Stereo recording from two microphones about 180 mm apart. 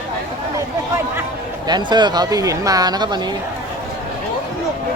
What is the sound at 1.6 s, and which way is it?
Speech, 25° right (ahead or behind).